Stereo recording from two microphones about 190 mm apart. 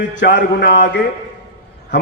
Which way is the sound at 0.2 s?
65° left (ahead or behind).